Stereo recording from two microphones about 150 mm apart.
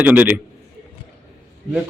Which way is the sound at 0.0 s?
10° right (ahead or behind).